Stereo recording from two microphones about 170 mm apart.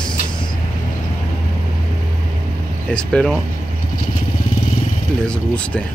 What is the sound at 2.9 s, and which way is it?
Speech, 5° left (ahead or behind).